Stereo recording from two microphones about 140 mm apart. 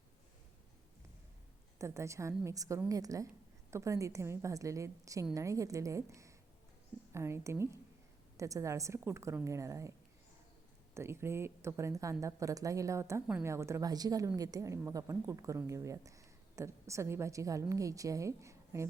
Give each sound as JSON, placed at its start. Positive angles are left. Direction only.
{"t": 1.8, "sound": "a woman's voice", "side_deg": -20}
{"t": 10.9, "sound": "a woman's voice", "side_deg": -20}